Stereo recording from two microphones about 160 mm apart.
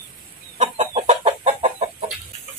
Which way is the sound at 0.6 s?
40° right (ahead or behind).